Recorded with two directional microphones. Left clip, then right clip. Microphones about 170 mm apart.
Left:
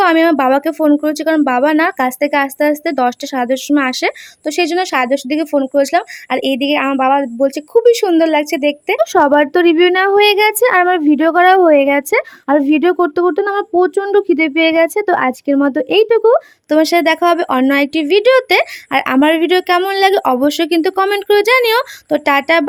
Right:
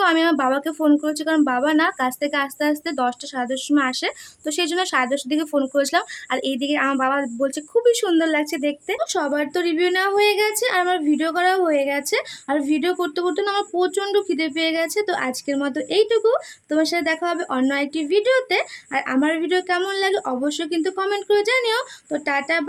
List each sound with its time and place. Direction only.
0.0 s speech: 40° left (ahead or behind)
9.0 s a woman's voice: 60° left (ahead or behind)